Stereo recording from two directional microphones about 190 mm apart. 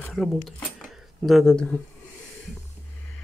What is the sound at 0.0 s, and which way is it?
Speech, centre (ahead or behind).